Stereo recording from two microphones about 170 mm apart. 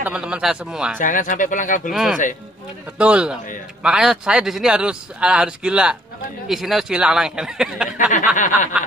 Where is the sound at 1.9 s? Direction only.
Centre (ahead or behind).